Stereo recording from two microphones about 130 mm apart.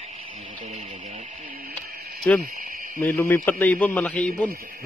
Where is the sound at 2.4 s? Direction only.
90° right.